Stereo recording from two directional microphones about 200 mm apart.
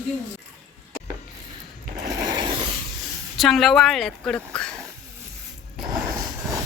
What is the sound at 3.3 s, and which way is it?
A woman's voice, centre (ahead or behind).